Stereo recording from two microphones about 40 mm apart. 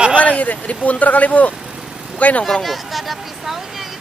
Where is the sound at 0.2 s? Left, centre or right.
Left.